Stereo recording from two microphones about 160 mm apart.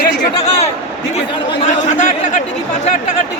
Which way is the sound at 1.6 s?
50° left (ahead or behind).